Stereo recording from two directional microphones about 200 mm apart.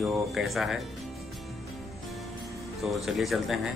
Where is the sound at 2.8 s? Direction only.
Centre (ahead or behind).